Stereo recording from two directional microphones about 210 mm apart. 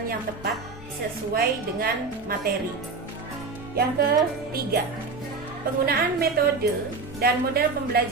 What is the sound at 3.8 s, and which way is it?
Speech, 50° right (ahead or behind).